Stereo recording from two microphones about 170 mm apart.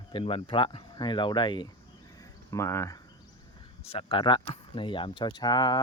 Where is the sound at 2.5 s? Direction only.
15° left (ahead or behind).